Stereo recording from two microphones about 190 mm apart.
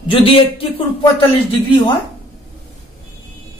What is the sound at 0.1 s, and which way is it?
Speech, 30° left (ahead or behind).